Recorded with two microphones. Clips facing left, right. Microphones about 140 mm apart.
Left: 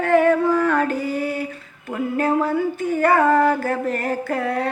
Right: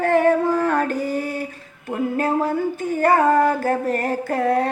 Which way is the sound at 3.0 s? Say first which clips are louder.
Even; 40° right (ahead or behind).